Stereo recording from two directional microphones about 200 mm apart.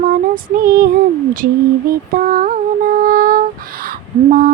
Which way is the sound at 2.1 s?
45° right (ahead or behind).